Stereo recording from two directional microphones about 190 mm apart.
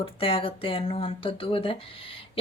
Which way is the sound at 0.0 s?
30° left (ahead or behind).